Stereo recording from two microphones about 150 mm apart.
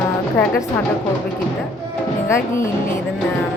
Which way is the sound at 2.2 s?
20° left (ahead or behind).